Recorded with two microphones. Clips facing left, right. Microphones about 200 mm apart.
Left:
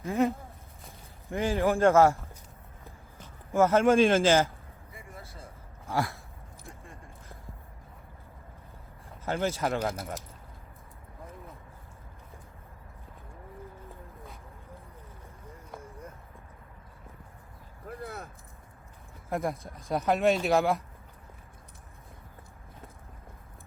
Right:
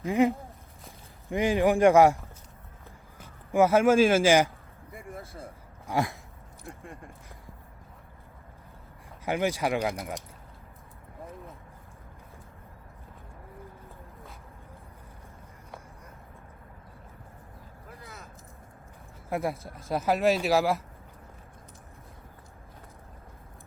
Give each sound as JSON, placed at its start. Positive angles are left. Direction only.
{"t": 0.0, "sound": "a man's voice", "side_deg": -15}
{"t": 3.2, "sound": "speech", "side_deg": -10}
{"t": 5.1, "sound": "a sound", "side_deg": -50}
{"t": 5.9, "sound": "a man's voice", "side_deg": -15}
{"t": 9.2, "sound": "a man's voice", "side_deg": -15}
{"t": 9.8, "sound": "speech", "side_deg": 0}
{"t": 17.8, "sound": "a sound", "side_deg": 55}
{"t": 19.3, "sound": "speech", "side_deg": 0}